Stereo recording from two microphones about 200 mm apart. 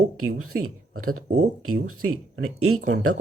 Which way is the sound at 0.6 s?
90° right.